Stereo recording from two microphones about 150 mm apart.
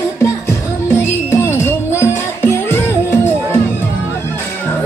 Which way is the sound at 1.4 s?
15° left (ahead or behind).